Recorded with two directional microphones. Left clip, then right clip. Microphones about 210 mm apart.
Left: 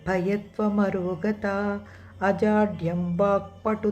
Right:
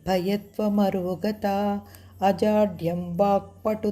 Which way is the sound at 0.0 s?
35° right (ahead or behind).